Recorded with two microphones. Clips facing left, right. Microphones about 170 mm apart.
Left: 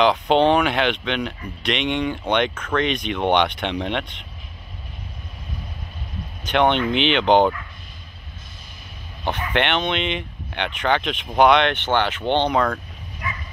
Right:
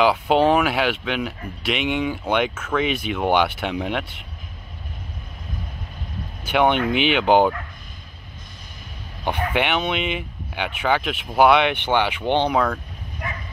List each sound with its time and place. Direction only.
0.0 s speech: 5° right (ahead or behind)
6.4 s speech: 10° right (ahead or behind)
9.5 s speech: 5° right (ahead or behind)
13.2 s bow-wow: 50° right (ahead or behind)